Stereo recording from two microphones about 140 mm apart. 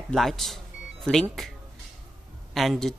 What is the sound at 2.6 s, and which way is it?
Speech, centre (ahead or behind).